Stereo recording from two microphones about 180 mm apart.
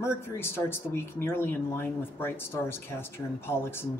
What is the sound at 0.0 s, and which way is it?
Speech, 15° left (ahead or behind).